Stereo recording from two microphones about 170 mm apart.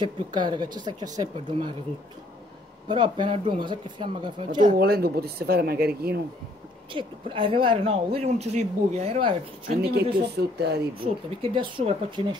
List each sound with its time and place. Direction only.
0.0 s speech: 25° right (ahead or behind)
2.9 s speech: 25° right (ahead or behind)
4.7 s speech: 65° right (ahead or behind)
6.9 s a woman's voice: 30° right (ahead or behind)
9.7 s speech: 70° right (ahead or behind)
11.2 s speech: 30° right (ahead or behind)